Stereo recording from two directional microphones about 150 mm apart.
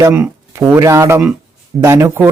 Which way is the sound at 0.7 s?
20° right (ahead or behind).